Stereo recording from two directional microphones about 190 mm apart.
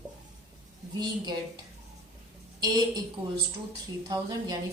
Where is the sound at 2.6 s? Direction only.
20° right (ahead or behind).